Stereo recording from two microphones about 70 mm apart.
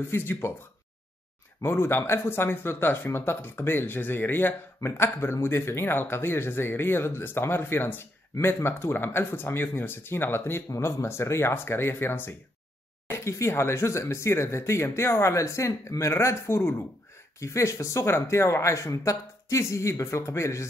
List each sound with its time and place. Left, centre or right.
0.1 s speech: left
1.6 s speech: left
13.1 s speech: left